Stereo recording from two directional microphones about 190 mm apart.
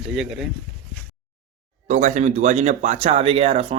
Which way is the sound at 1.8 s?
40° right (ahead or behind).